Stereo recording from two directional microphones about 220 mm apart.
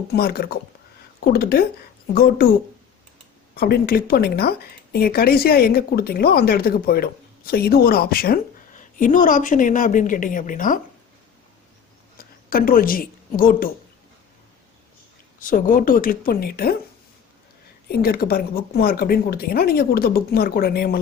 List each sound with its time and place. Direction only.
0.1 s speech: 45° left (ahead or behind)
12.1 s a woman's voice: 40° left (ahead or behind)
15.4 s a woman's voice: 35° left (ahead or behind)
17.8 s speech: 40° left (ahead or behind)